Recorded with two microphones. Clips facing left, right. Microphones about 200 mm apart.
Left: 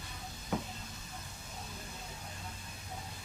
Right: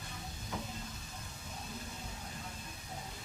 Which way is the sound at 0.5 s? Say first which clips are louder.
Left 6 dB; 60° left (ahead or behind).